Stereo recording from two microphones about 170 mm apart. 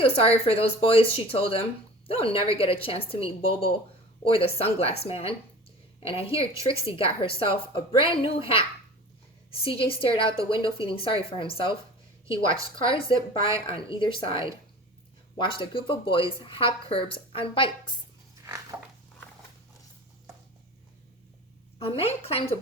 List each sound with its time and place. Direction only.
0.0 s a woman's voice: 35° left (ahead or behind)
9.6 s a woman's voice: 30° left (ahead or behind)
21.8 s a woman's voice: 35° left (ahead or behind)